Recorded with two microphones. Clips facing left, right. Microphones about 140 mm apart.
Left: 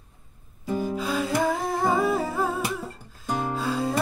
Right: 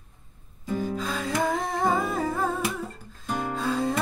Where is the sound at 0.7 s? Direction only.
10° left (ahead or behind).